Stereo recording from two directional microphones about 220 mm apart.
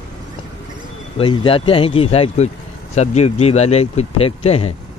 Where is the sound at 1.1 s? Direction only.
25° left (ahead or behind).